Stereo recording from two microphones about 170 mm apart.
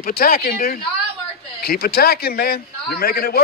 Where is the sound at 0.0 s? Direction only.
60° left (ahead or behind).